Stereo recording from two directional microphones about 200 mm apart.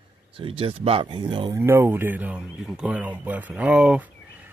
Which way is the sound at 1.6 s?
10° right (ahead or behind).